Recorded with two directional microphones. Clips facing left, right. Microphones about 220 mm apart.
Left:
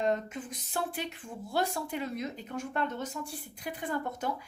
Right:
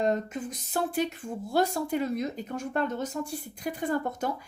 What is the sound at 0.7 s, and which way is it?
Speech, 40° right (ahead or behind).